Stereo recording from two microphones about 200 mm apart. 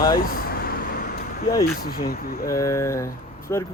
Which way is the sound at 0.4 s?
50° left (ahead or behind).